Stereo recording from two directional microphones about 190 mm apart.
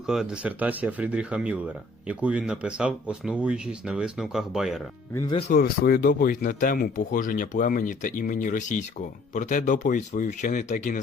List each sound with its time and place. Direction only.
0.0 s speech: centre (ahead or behind)
5.5 s speech: 50° left (ahead or behind)